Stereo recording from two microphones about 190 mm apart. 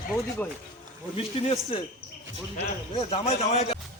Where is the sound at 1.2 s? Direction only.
30° left (ahead or behind).